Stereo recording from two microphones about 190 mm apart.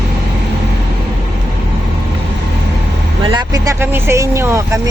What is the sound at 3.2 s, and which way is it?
Speech, 25° right (ahead or behind).